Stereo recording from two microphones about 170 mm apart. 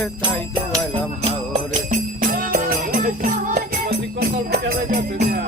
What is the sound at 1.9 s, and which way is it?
Music, 55° right (ahead or behind).